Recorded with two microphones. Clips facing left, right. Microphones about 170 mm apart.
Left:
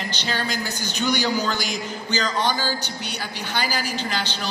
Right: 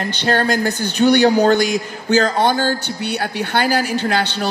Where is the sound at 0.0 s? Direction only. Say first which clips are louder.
Right 9 dB; 55° right (ahead or behind).